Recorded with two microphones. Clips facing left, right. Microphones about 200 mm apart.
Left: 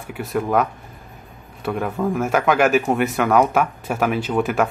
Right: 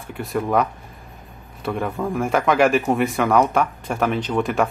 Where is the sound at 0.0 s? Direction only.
Centre (ahead or behind).